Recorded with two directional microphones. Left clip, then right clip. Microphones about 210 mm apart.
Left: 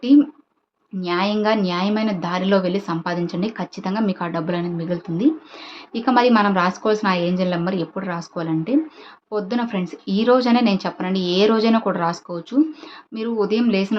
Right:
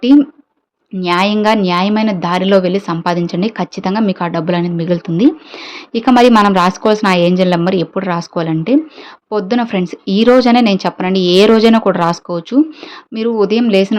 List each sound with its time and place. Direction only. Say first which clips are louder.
1.0 s speech: right 8 dB; 35° right (ahead or behind)